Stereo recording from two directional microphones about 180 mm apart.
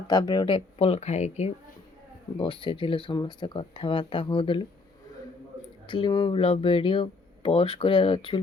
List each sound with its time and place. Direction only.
0.1 s speech: 20° left (ahead or behind)
5.9 s speech: 25° left (ahead or behind)